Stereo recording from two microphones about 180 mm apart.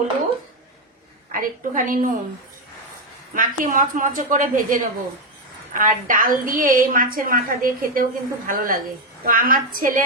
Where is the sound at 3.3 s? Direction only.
50° right (ahead or behind).